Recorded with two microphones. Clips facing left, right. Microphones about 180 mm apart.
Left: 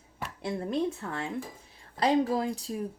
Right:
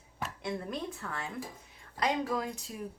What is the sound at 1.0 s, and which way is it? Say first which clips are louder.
Speech: left 5 dB; 25° left (ahead or behind).